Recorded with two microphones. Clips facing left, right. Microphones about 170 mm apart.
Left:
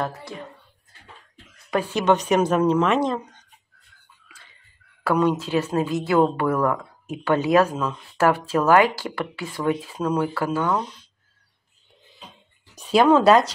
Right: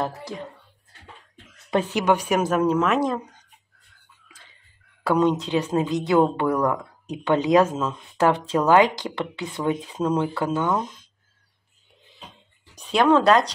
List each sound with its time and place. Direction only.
1.7 s a woman's voice: 20° right (ahead or behind); by 3.0 s 5° right (ahead or behind)
5.0 s a woman's voice: 20° right (ahead or behind)
12.7 s speech: 5° left (ahead or behind)